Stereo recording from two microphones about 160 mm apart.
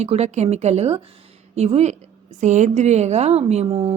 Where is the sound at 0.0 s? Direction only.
40° right (ahead or behind).